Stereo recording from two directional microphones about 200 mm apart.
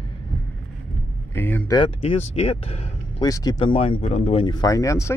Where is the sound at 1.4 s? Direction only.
10° left (ahead or behind).